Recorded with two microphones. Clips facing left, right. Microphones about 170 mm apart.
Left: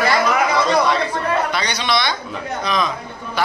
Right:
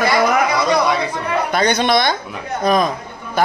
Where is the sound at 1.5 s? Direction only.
50° right (ahead or behind).